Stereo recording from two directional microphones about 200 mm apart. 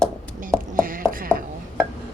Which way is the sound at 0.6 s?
45° right (ahead or behind).